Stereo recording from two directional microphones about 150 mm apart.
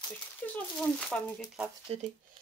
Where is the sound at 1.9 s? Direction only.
40° right (ahead or behind).